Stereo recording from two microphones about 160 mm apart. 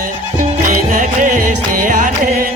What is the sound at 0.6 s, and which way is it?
Music, 55° right (ahead or behind).